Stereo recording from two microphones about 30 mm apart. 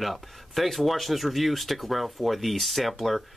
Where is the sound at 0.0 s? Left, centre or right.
Centre.